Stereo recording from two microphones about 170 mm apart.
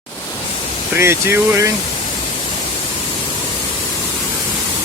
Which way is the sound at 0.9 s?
15° right (ahead or behind).